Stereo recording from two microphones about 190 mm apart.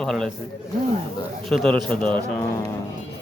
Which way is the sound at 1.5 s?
Centre (ahead or behind).